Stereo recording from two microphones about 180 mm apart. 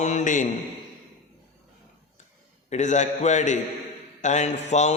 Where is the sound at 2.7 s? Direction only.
40° left (ahead or behind).